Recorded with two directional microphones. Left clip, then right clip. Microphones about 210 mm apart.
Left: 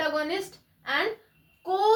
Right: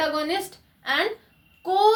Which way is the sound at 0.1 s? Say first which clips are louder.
Right 2 dB; 40° right (ahead or behind).